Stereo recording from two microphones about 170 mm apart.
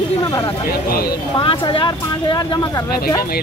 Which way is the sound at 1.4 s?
30° left (ahead or behind).